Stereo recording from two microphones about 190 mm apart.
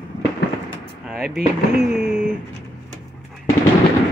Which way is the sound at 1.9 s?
40° left (ahead or behind).